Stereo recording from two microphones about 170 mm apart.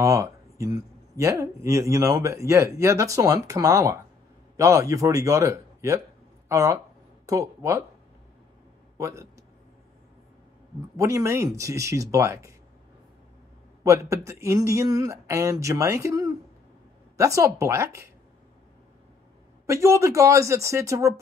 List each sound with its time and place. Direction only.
0.0 s speech: 20° right (ahead or behind)
8.9 s a man's voice: 15° right (ahead or behind)
11.0 s speech: 20° right (ahead or behind)
13.8 s speech: 20° right (ahead or behind)
19.6 s speech: 15° right (ahead or behind)